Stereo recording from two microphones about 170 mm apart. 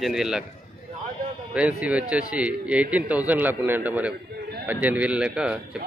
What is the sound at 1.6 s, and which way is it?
A man's voice, 5° right (ahead or behind).